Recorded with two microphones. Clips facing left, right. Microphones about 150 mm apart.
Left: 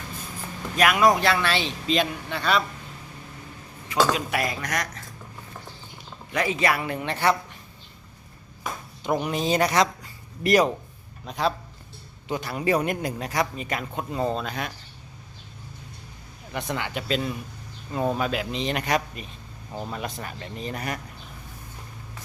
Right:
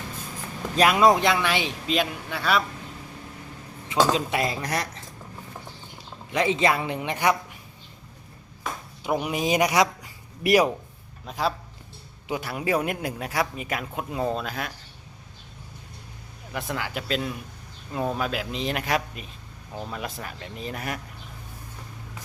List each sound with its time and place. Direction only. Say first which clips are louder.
0.8 s a man's voice: right 1 dB; 25° right (ahead or behind); by 2.6 s 5° right (ahead or behind)
3.8 s speech: right 1 dB; 20° right (ahead or behind)
6.3 s speech: right 2 dB; 20° right (ahead or behind)
9.0 s a man's voice: even; 10° right (ahead or behind)
16.5 s a man's voice: left 1 dB; centre (ahead or behind)